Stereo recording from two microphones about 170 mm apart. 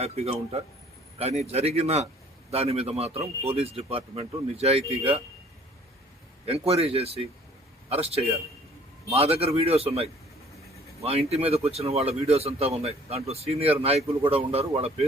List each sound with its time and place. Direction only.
0.0 s speech: 35° right (ahead or behind)
6.4 s speech: 35° right (ahead or behind)